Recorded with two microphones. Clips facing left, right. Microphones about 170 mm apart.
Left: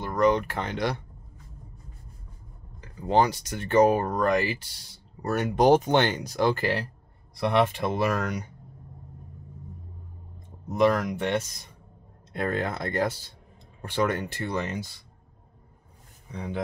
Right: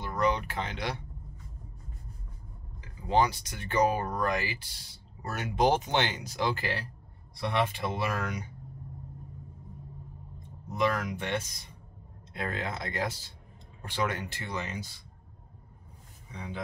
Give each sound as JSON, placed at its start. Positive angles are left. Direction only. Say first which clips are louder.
{"t": 0.0, "sound": "speech", "louder": "left 6 dB", "side_deg": 50}
{"t": 2.8, "sound": "speech", "louder": "left 4 dB", "side_deg": 50}
{"t": 10.7, "sound": "speech", "louder": "left 7 dB", "side_deg": 50}
{"t": 16.3, "sound": "speech", "louder": "left 7 dB", "side_deg": 50}